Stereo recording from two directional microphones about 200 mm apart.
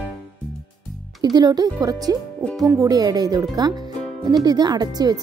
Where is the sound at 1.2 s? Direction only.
20° right (ahead or behind).